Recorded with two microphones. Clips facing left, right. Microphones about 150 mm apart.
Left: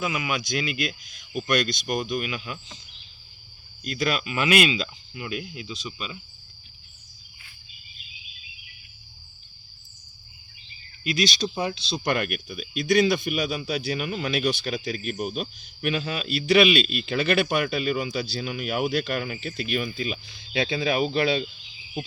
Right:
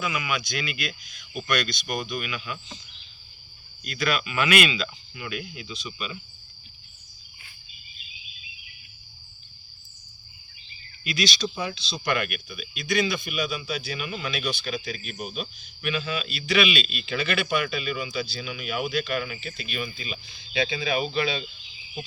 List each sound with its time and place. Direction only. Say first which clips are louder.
0.0 s speech: left 1 dB; 35° left (ahead or behind)
3.8 s speech: left 1 dB; 35° left (ahead or behind)
11.0 s a man's voice: left 2 dB; 30° left (ahead or behind); by 20.6 s 50° left (ahead or behind)
20.6 s speech: left 1 dB; 35° left (ahead or behind)
20.8 s a man's voice: left 6 dB; 50° left (ahead or behind)